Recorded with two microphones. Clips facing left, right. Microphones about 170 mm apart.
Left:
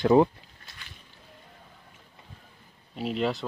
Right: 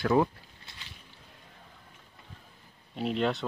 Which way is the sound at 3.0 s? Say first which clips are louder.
Left 1 dB; centre (ahead or behind).